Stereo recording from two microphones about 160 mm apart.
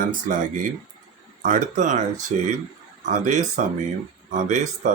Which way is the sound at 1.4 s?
55° right (ahead or behind).